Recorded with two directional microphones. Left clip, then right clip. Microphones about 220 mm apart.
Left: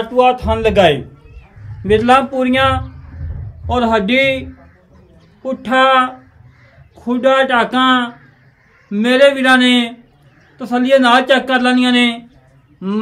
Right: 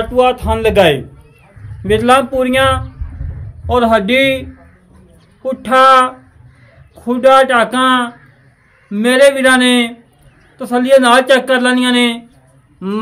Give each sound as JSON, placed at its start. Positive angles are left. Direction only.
{"t": 0.0, "sound": "speech", "side_deg": -30}